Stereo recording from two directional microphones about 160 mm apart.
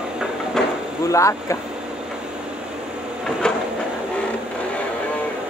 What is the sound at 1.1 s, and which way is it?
Speech, 20° left (ahead or behind).